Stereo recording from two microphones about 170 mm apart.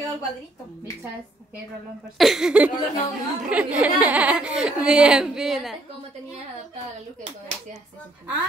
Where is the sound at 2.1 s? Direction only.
Centre (ahead or behind).